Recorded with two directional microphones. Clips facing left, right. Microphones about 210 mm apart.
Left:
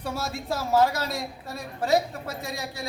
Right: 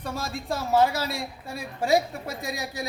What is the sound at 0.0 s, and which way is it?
A woman's voice, 5° left (ahead or behind).